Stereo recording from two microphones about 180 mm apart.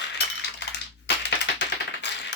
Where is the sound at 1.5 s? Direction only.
75° left (ahead or behind).